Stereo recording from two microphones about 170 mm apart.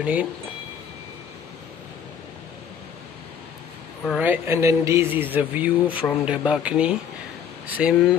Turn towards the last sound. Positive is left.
turn(degrees=-10)  # may be behind; listen again after turning